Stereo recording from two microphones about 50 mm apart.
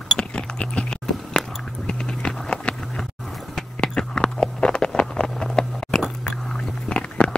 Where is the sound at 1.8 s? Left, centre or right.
Centre.